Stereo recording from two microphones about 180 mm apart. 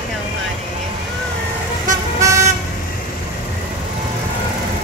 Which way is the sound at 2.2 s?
15° right (ahead or behind).